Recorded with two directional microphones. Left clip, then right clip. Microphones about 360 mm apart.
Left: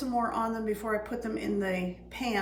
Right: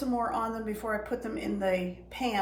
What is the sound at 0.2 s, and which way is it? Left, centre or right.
A woman's voice, centre.